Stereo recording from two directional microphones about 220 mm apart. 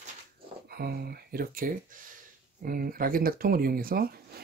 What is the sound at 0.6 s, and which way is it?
Speech, 45° right (ahead or behind).